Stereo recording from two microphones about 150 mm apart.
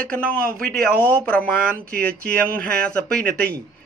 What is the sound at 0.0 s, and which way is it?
Speech, 70° right (ahead or behind).